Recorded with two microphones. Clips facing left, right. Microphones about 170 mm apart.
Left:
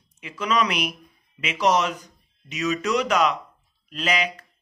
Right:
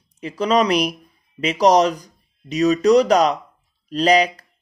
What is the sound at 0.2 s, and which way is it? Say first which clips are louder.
Speech: right 6 dB; 35° right (ahead or behind).